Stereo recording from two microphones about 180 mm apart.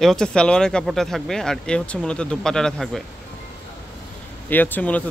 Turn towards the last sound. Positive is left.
turn(degrees=10)  # may be behind; listen again after turning